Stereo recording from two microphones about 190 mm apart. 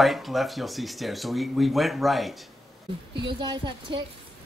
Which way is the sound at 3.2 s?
25° right (ahead or behind).